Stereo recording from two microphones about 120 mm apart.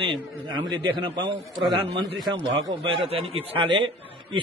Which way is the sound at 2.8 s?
50° right (ahead or behind).